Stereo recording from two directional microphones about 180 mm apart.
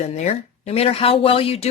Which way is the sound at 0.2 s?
40° left (ahead or behind).